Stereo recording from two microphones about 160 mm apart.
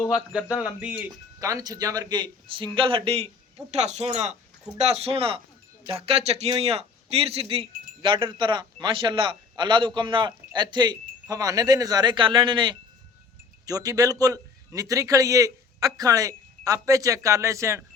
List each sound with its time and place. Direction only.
0.1 s speech: 5° right (ahead or behind)
1.5 s a man's voice: 20° right (ahead or behind)